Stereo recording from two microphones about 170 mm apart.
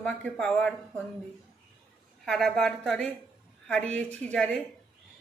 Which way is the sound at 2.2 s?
5° left (ahead or behind).